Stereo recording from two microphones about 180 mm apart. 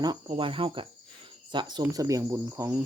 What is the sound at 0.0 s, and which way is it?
Speech, 25° right (ahead or behind).